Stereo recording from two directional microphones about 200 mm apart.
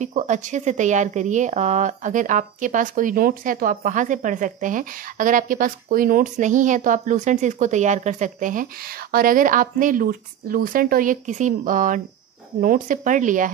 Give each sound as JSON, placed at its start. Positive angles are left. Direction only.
{"t": 0.0, "sound": "speech", "side_deg": -40}